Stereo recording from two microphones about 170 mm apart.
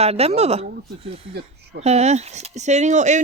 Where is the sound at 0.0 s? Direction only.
35° right (ahead or behind).